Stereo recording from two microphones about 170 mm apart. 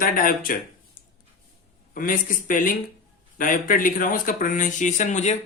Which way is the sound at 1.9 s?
55° left (ahead or behind).